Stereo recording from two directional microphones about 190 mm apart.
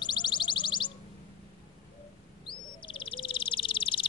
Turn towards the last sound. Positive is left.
turn(degrees=25)  # may be behind; listen again after turning